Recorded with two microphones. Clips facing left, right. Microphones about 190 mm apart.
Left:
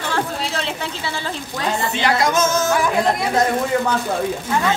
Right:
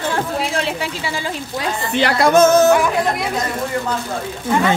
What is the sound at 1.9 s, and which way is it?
Music, 60° right (ahead or behind).